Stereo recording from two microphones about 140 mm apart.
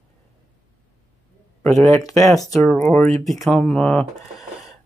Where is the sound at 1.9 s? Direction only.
20° left (ahead or behind).